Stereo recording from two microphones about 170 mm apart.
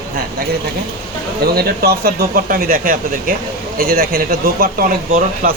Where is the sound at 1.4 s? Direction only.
65° right (ahead or behind).